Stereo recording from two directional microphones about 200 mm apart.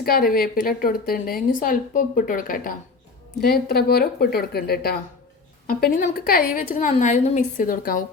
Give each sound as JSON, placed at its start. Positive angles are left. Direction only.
{"t": 0.0, "sound": "a woman's voice", "side_deg": 50}